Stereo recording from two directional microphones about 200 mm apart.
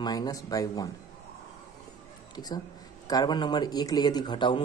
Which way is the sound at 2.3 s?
20° left (ahead or behind).